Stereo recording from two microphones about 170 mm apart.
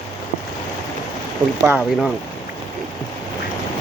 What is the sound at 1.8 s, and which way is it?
Speech, centre (ahead or behind).